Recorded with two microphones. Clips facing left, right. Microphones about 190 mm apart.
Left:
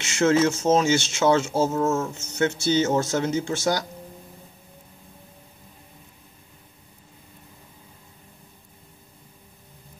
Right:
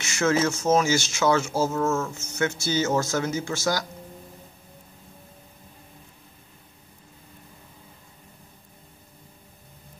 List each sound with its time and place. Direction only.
0.0 s speech: 25° left (ahead or behind)